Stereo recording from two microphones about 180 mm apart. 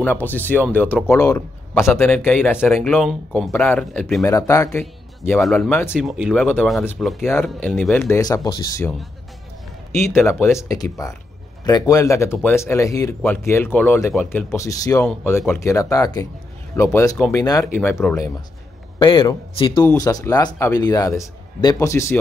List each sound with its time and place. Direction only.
0.0 s speech: 10° left (ahead or behind)
4.2 s a man's voice: 15° left (ahead or behind)
8.1 s speech: 20° left (ahead or behind)
9.9 s speech: 15° left (ahead or behind)
19.8 s speech: 15° left (ahead or behind)